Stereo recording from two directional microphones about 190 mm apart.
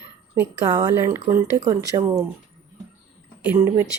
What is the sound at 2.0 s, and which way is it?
Speech, 10° right (ahead or behind).